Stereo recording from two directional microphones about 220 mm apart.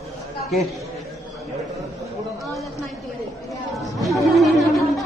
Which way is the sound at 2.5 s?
Centre (ahead or behind).